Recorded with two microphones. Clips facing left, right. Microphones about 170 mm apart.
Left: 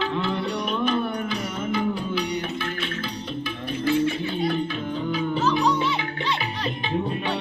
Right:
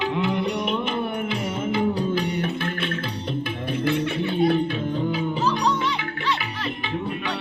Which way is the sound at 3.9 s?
60° right (ahead or behind).